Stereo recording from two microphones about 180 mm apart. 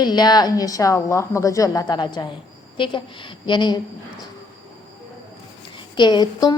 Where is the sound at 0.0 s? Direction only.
25° left (ahead or behind).